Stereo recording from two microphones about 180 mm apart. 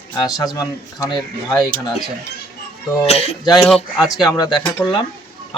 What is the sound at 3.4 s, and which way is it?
Speech, 20° left (ahead or behind).